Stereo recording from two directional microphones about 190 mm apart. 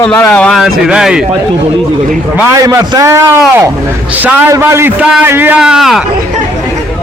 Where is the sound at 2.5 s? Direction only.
20° right (ahead or behind); by 6.0 s centre (ahead or behind).